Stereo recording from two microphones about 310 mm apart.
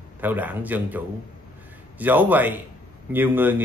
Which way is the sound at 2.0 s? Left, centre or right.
Centre.